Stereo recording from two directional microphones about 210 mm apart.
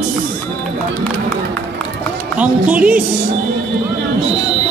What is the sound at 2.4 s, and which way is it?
Speech, 5° right (ahead or behind).